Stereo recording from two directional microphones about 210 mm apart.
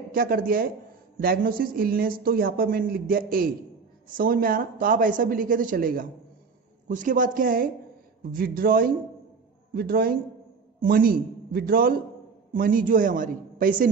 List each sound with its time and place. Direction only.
0.1 s speech: 45° right (ahead or behind)